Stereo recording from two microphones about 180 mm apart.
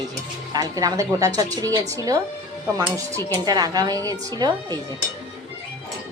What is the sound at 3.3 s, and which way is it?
Speech, 20° right (ahead or behind).